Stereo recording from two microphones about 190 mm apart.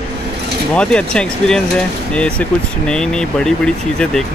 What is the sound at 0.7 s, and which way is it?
Speech, 5° left (ahead or behind).